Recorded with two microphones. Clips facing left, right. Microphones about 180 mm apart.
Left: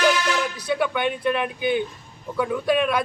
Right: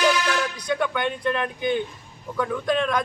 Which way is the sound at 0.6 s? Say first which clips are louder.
Left 1 dB; 5° left (ahead or behind).